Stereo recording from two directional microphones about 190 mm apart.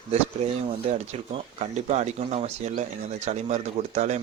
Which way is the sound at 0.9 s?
35° right (ahead or behind).